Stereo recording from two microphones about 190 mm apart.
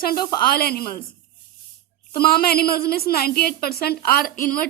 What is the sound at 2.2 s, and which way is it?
A woman's voice, 50° left (ahead or behind).